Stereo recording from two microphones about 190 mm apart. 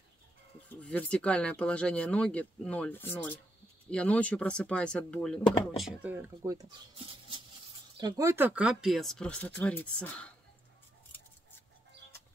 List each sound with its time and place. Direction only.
0.7 s speech: 5° left (ahead or behind)
5.8 s speech: 5° right (ahead or behind)